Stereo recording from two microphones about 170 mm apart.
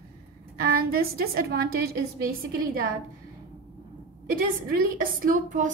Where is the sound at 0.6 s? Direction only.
65° right (ahead or behind).